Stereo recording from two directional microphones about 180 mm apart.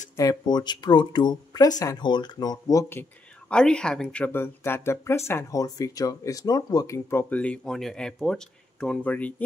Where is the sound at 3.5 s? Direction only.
5° left (ahead or behind).